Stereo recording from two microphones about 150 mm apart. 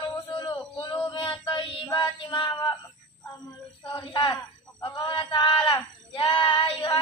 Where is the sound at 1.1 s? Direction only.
30° left (ahead or behind).